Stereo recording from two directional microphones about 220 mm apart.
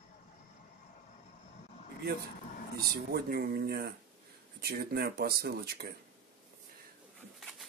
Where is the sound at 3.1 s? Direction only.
45° right (ahead or behind).